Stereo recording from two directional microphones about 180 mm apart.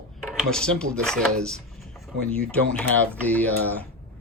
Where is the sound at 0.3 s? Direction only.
5° left (ahead or behind).